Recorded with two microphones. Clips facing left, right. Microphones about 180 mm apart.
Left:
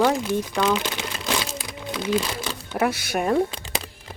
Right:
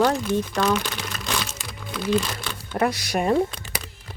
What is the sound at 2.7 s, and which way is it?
Speech, 5° left (ahead or behind).